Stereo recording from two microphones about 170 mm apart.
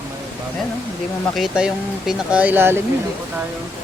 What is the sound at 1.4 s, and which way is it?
Speech, 5° right (ahead or behind).